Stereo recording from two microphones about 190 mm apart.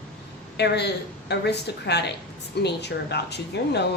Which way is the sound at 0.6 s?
60° left (ahead or behind).